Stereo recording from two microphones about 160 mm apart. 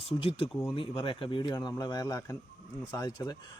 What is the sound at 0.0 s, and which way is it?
Speech, 35° left (ahead or behind).